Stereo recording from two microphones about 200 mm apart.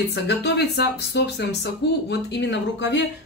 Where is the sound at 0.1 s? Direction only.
55° left (ahead or behind).